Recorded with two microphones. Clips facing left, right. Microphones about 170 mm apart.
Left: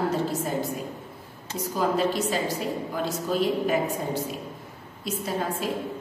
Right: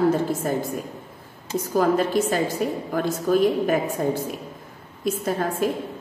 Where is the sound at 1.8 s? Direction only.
50° right (ahead or behind).